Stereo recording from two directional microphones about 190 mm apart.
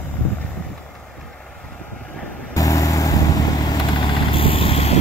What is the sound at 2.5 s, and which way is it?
Vehicle, 20° left (ahead or behind).